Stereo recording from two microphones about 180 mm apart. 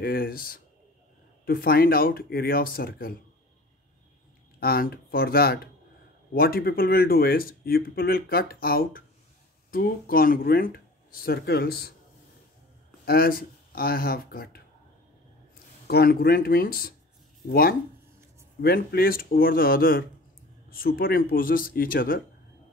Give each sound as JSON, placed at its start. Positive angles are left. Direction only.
{"t": 0.0, "sound": "speech", "side_deg": 55}
{"t": 4.6, "sound": "speech", "side_deg": 55}
{"t": 13.0, "sound": "speech", "side_deg": 55}
{"t": 15.9, "sound": "speech", "side_deg": 60}